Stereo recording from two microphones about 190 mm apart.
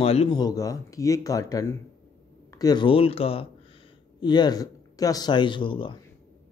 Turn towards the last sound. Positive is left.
turn(degrees=25)  # may be behind; listen again after turning